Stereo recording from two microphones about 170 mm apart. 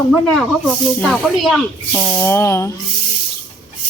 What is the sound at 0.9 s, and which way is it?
A woman's voice, 5° left (ahead or behind).